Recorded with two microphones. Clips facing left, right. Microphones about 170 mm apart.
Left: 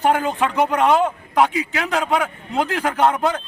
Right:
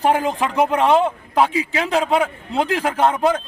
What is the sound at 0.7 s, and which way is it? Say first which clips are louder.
A man's voice: right 1 dB; 30° right (ahead or behind).